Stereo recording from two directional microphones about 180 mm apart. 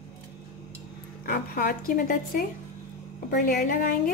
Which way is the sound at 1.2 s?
55° left (ahead or behind).